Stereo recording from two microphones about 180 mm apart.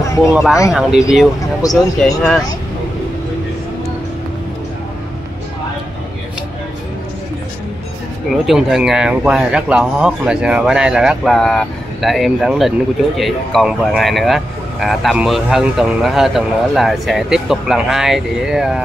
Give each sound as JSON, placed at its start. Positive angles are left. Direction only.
{"t": 0.3, "sound": "speech", "side_deg": -5}
{"t": 1.6, "sound": "speech", "side_deg": 20}
{"t": 2.0, "sound": "speech", "side_deg": 0}
{"t": 8.3, "sound": "speech", "side_deg": 0}